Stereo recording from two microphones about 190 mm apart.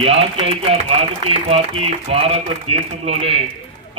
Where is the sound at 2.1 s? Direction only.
30° right (ahead or behind).